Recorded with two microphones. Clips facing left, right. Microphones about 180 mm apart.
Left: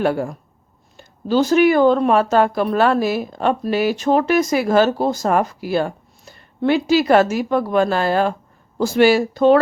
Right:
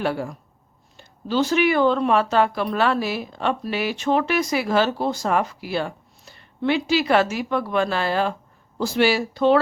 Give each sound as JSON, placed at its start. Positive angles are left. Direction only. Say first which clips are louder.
{"t": 0.0, "sound": "speech", "louder": "left 5 dB", "side_deg": 50}